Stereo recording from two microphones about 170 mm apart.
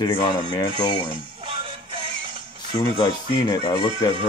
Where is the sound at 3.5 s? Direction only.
20° left (ahead or behind).